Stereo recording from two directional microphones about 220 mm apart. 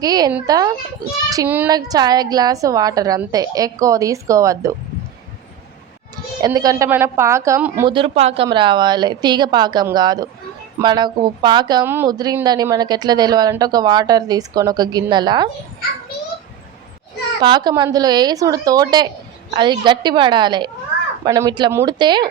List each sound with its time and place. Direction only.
0.0 s a woman's voice: 15° right (ahead or behind)
6.4 s a woman's voice: 15° right (ahead or behind)
7.9 s a woman's voice: 25° right (ahead or behind)
17.4 s a woman's voice: 20° right (ahead or behind)